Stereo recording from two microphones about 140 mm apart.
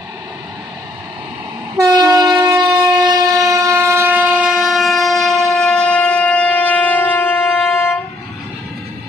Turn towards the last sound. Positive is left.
turn(degrees=15)  # may be behind; listen again after turning